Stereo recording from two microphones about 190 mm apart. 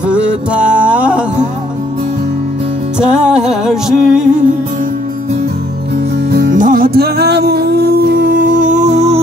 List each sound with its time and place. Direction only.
0.1 s music: 5° right (ahead or behind)
3.0 s music: 5° right (ahead or behind)
6.3 s music: 45° right (ahead or behind)